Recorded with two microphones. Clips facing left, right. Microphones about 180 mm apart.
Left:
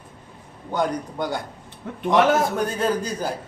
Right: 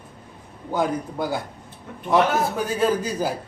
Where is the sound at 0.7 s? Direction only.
5° right (ahead or behind).